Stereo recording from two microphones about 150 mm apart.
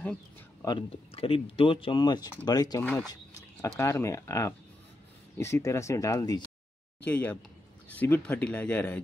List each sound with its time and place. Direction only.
0.0 s a sound: 10° left (ahead or behind)
0.7 s speech: 35° left (ahead or behind)
2.8 s speech: 10° left (ahead or behind); by 6.5 s 25° left (ahead or behind)
7.1 s speech: 10° left (ahead or behind)